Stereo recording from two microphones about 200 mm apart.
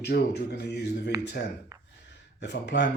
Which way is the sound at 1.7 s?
10° right (ahead or behind).